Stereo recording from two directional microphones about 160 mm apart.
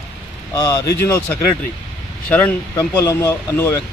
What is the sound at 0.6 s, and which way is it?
Speech, 20° left (ahead or behind).